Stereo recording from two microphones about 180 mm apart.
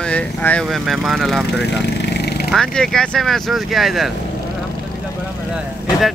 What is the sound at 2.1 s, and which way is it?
Vehicle, 65° left (ahead or behind).